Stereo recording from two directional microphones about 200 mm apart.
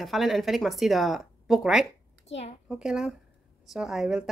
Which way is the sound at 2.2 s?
30° left (ahead or behind).